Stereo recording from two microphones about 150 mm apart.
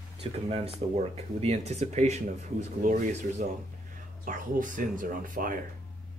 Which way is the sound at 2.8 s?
60° right (ahead or behind).